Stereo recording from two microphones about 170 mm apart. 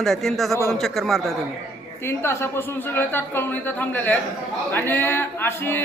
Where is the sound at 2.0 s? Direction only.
15° left (ahead or behind).